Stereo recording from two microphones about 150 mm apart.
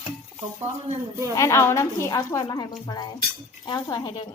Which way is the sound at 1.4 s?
20° left (ahead or behind).